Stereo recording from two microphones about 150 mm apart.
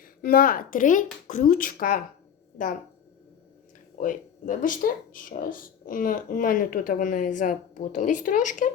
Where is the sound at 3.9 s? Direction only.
65° left (ahead or behind).